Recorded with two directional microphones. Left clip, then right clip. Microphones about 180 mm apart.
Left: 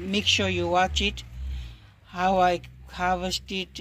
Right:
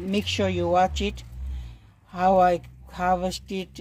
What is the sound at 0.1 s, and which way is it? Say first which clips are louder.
Speech: left 2 dB; 50° right (ahead or behind).